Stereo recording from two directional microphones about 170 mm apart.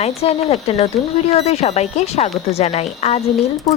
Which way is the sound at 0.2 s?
35° left (ahead or behind).